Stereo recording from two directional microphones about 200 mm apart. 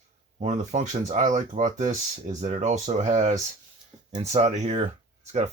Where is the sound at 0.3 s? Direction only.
35° right (ahead or behind).